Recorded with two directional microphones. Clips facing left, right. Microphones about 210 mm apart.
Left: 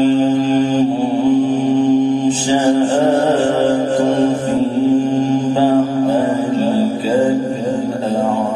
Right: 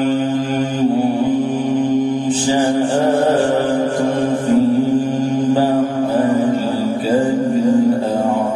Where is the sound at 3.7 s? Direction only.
25° left (ahead or behind).